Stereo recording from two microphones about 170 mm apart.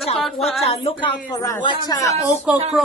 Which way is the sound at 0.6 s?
35° left (ahead or behind).